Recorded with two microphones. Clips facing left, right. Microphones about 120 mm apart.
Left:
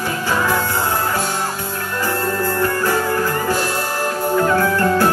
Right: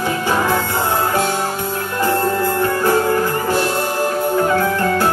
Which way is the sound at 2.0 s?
20° right (ahead or behind).